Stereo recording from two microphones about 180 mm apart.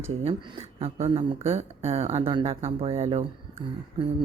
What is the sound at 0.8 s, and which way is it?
Speech, 35° right (ahead or behind).